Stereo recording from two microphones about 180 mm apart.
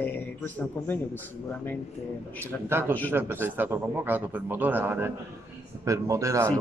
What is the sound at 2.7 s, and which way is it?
A man's voice, 10° right (ahead or behind).